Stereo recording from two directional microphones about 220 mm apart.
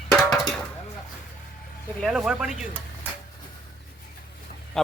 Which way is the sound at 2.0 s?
5° right (ahead or behind).